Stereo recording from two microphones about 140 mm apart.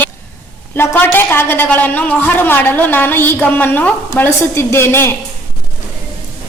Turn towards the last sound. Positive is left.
turn(degrees=15)  # may be behind; listen again after turning